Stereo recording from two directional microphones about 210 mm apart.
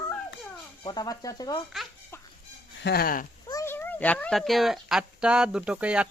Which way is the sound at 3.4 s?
15° left (ahead or behind).